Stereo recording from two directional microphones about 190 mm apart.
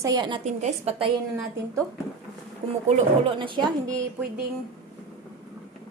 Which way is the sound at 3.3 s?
25° right (ahead or behind).